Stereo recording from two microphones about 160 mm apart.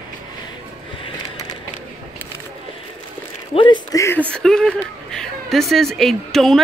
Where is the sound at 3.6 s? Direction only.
30° left (ahead or behind).